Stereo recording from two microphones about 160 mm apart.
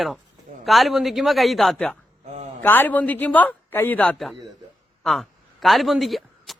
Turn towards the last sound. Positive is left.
turn(degrees=0)  # may be behind; listen again after turning